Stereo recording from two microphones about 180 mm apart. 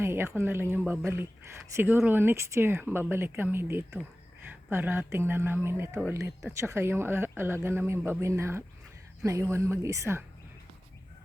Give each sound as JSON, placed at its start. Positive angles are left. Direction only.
{"t": 0.0, "sound": "speech", "side_deg": -15}